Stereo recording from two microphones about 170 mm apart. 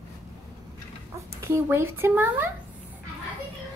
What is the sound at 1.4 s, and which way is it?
Speech, 15° right (ahead or behind).